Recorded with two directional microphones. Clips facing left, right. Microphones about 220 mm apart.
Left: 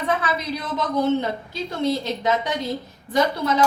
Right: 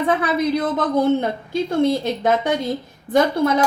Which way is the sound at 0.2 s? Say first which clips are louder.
Right 8 dB; 50° right (ahead or behind).